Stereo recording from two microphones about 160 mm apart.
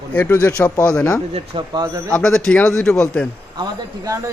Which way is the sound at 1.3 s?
30° right (ahead or behind).